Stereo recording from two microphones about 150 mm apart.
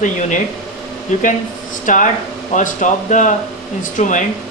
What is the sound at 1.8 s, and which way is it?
Speech, 60° left (ahead or behind).